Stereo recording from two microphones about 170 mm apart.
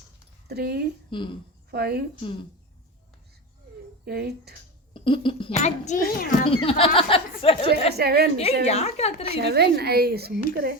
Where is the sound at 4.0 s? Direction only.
65° right (ahead or behind).